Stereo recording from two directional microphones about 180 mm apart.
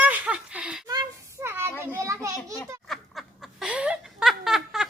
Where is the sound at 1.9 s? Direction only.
15° right (ahead or behind).